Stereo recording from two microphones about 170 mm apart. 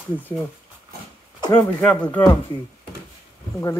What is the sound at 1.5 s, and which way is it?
Speech, 10° left (ahead or behind).